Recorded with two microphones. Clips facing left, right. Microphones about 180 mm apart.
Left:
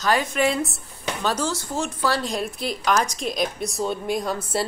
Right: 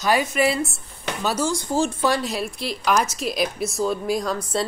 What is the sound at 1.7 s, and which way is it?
Speech, 30° right (ahead or behind).